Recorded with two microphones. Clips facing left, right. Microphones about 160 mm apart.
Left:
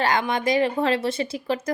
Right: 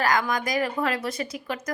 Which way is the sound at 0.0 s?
25° left (ahead or behind).